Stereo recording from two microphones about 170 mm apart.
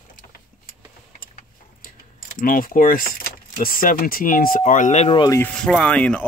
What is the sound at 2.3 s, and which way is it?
Speech, 55° left (ahead or behind).